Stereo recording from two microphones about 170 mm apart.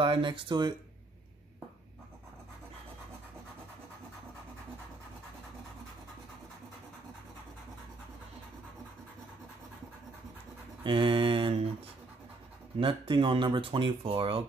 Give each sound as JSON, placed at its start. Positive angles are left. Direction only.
{"t": 0.0, "sound": "speech", "side_deg": -30}
{"t": 10.8, "sound": "mantra", "side_deg": -30}
{"t": 12.7, "sound": "speech", "side_deg": -30}